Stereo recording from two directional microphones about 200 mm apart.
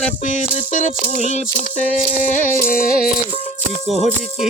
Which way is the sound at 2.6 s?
45° left (ahead or behind).